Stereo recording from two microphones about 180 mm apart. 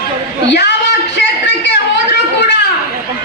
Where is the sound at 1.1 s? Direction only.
75° left (ahead or behind).